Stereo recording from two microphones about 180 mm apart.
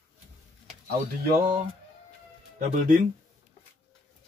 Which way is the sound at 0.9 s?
55° right (ahead or behind).